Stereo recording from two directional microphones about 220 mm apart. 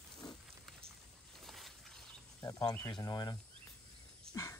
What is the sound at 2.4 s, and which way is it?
Speech, 15° left (ahead or behind).